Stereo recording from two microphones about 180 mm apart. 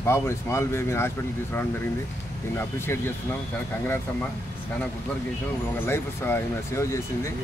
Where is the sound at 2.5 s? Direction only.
15° left (ahead or behind).